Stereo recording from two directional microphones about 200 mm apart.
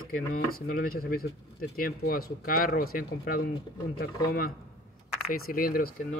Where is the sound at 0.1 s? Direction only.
45° left (ahead or behind).